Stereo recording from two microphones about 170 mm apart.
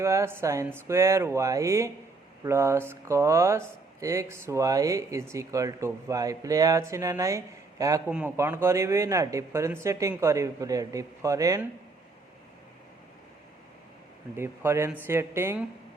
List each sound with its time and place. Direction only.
0.0 s speech: 15° right (ahead or behind)
14.3 s speech: 15° right (ahead or behind)